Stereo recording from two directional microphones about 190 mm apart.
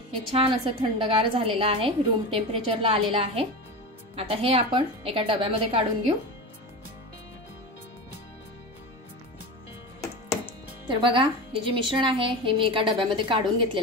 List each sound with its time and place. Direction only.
0.3 s a woman's voice: 30° right (ahead or behind)
10.9 s a woman's voice: 25° right (ahead or behind)